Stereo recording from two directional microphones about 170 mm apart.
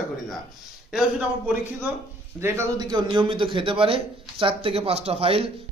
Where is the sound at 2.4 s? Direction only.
20° right (ahead or behind); by 5.5 s 35° right (ahead or behind).